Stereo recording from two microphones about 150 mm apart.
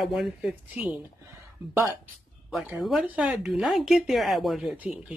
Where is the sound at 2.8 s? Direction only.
5° right (ahead or behind).